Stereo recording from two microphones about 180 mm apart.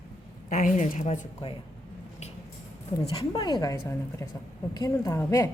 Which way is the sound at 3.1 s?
25° left (ahead or behind).